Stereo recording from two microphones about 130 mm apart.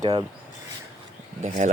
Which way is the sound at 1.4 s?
60° right (ahead or behind).